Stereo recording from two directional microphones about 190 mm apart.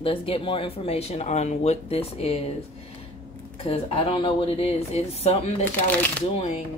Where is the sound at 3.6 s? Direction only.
30° left (ahead or behind).